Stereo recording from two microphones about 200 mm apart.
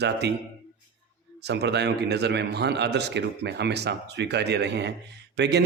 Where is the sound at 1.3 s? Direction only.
55° right (ahead or behind).